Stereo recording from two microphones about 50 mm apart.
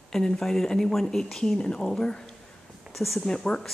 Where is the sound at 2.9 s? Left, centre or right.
Centre.